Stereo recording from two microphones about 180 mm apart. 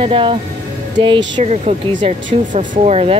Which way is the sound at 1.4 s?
40° right (ahead or behind).